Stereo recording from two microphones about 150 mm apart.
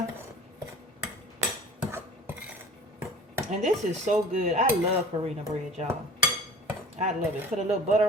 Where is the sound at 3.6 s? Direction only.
50° right (ahead or behind).